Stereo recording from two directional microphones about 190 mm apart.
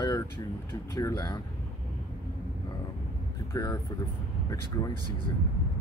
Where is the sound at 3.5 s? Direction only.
15° left (ahead or behind).